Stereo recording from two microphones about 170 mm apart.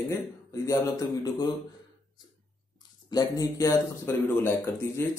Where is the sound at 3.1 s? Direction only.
20° left (ahead or behind).